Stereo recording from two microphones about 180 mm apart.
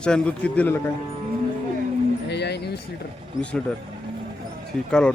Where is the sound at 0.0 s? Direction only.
5° left (ahead or behind).